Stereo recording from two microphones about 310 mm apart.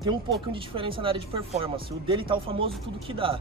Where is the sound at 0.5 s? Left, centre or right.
Centre.